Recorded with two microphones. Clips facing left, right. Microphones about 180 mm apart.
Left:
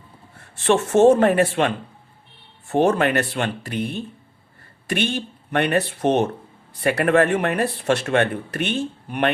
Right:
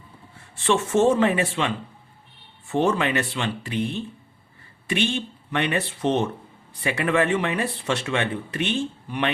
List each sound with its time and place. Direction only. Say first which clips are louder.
0.6 s speech: left 5 dB; 55° left (ahead or behind)
4.9 s speech: left 1 dB; 55° left (ahead or behind)